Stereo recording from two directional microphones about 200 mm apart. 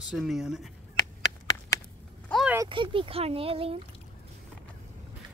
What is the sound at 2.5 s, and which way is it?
Speech, 20° right (ahead or behind).